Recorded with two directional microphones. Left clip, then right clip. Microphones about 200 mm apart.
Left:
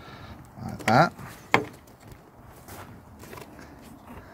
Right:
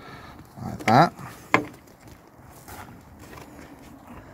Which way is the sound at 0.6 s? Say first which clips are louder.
Right 3 dB; 5° right (ahead or behind).